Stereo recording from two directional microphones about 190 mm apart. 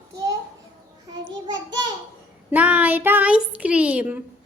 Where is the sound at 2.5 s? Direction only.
10° right (ahead or behind).